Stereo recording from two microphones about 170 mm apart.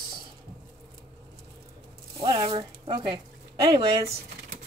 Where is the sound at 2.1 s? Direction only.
25° right (ahead or behind).